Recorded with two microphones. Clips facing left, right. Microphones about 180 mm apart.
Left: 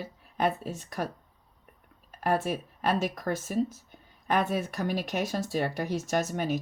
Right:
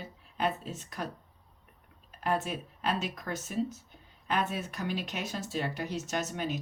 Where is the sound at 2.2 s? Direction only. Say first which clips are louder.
Left 4 dB; 45° left (ahead or behind).